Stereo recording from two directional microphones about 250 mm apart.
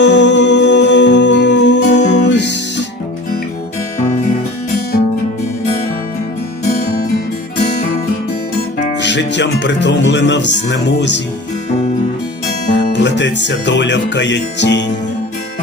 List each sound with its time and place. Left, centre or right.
0.0 s music: left
9.0 s music: left
12.7 s music: left